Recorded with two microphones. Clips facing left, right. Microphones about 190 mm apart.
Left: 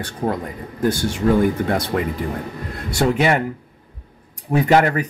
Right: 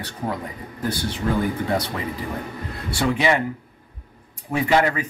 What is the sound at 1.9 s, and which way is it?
Speech, 55° left (ahead or behind).